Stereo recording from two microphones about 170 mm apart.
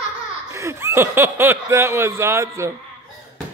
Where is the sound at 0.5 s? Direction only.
15° right (ahead or behind).